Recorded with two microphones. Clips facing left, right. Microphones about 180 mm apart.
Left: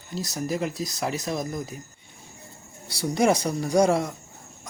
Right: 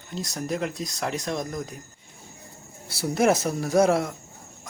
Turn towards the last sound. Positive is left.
turn(degrees=-5)  # may be behind; listen again after turning